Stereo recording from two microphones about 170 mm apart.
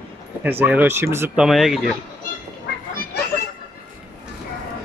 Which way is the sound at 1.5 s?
Centre (ahead or behind).